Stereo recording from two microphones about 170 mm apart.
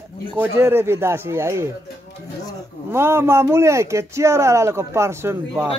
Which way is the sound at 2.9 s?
15° right (ahead or behind).